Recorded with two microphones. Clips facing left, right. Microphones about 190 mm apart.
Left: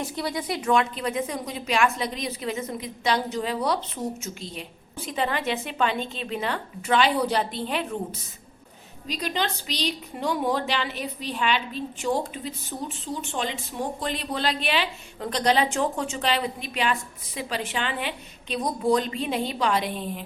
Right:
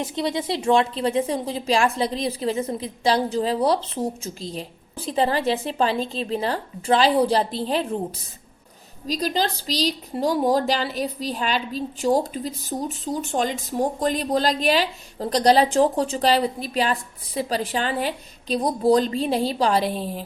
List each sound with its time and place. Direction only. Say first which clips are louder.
0.0 s a woman's voice: right 4 dB; 25° right (ahead or behind)
9.0 s a woman's voice: right 5 dB; 35° right (ahead or behind)